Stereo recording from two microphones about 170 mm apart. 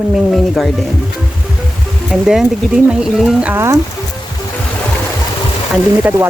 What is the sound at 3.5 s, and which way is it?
Speech, 15° right (ahead or behind).